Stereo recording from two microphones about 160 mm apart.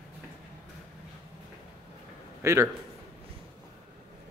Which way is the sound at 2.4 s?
20° right (ahead or behind).